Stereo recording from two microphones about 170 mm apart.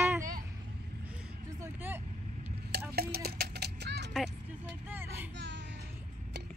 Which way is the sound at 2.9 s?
65° right (ahead or behind).